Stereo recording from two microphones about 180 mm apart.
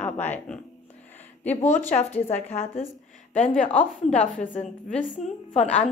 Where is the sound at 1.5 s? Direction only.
40° left (ahead or behind).